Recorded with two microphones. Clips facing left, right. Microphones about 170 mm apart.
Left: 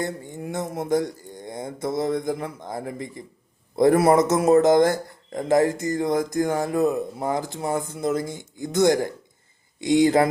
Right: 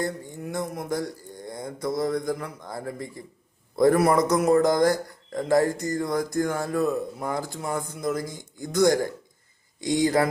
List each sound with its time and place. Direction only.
0.0 s speech: 20° left (ahead or behind)